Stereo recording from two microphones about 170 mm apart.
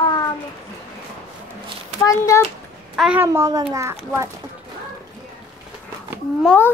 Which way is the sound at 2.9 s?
5° right (ahead or behind).